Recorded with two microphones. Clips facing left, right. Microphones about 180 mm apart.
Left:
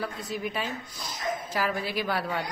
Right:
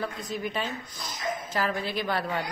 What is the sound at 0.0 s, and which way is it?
A woman's voice, 5° left (ahead or behind).